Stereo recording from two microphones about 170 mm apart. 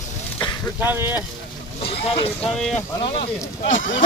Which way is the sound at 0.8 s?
10° right (ahead or behind).